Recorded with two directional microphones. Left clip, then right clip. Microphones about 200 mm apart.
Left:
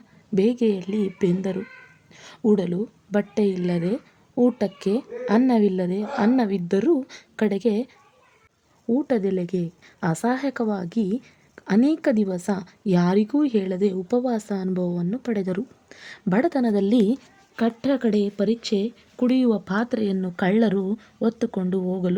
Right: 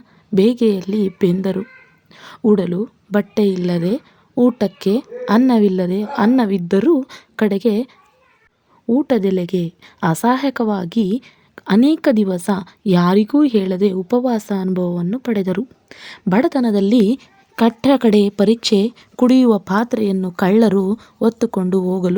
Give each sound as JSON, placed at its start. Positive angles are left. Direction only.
{"t": 0.3, "sound": "a woman's voice", "side_deg": -25}
{"t": 8.9, "sound": "a woman's voice", "side_deg": -25}
{"t": 17.6, "sound": "a woman's voice", "side_deg": -40}